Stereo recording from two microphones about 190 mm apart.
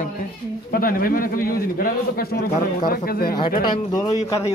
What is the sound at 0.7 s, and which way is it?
A man's voice, 50° left (ahead or behind).